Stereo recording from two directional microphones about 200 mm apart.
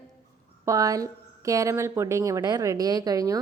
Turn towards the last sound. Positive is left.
turn(degrees=-15)  # may be behind; listen again after turning